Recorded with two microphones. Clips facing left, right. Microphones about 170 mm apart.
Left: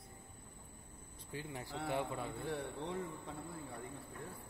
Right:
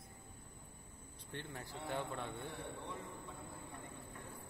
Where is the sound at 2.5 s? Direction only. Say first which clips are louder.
Left 6 dB; 90° left.